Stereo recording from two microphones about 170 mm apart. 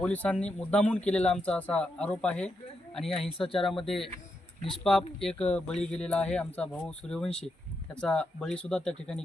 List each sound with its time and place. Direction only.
0.0 s speech: 10° left (ahead or behind)
3.3 s speech: 30° left (ahead or behind)
3.8 s speech: centre (ahead or behind)